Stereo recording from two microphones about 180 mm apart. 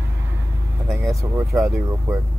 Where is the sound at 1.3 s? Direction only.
15° right (ahead or behind).